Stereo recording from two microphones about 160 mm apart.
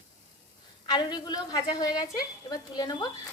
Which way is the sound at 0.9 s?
25° left (ahead or behind).